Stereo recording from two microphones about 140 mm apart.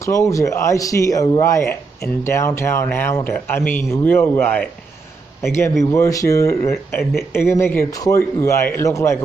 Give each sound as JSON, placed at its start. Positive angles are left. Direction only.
{"t": 0.0, "sound": "speech", "side_deg": 20}